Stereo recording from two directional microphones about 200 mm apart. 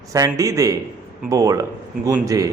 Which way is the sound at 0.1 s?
15° right (ahead or behind).